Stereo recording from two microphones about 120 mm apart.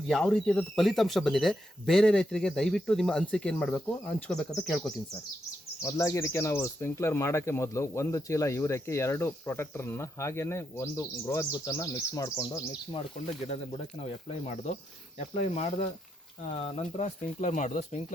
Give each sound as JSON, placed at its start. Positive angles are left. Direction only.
{"t": 0.1, "sound": "speech", "side_deg": 5}
{"t": 5.8, "sound": "speech", "side_deg": 25}
{"t": 13.4, "sound": "speech", "side_deg": 70}